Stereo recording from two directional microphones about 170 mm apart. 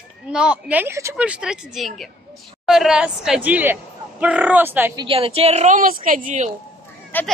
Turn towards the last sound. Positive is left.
turn(degrees=10)  # may be behind; listen again after turning